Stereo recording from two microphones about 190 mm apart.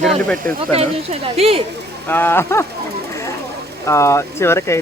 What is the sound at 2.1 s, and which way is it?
Speech, 10° left (ahead or behind).